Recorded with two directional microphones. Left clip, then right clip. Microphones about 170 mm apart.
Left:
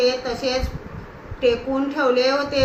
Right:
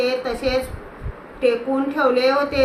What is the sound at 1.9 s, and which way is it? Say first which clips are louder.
Speech: right 1 dB; 20° right (ahead or behind).